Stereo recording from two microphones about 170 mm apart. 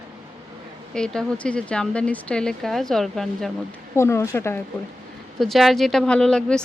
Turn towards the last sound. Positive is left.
turn(degrees=5)  # may be behind; listen again after turning